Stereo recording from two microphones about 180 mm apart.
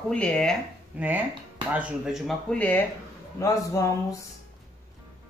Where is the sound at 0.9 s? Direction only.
10° right (ahead or behind); by 2.8 s 10° left (ahead or behind).